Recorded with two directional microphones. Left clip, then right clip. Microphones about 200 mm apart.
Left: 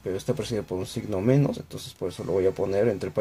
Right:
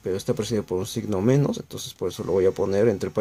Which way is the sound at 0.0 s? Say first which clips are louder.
Right 3 dB; 35° right (ahead or behind).